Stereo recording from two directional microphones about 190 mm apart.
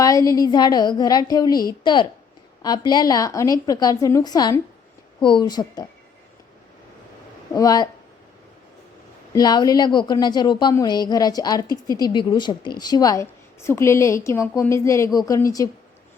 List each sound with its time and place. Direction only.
0.0 s a woman's voice: 20° left (ahead or behind)
7.5 s a woman's voice: 20° left (ahead or behind)
9.3 s a woman's voice: 20° left (ahead or behind)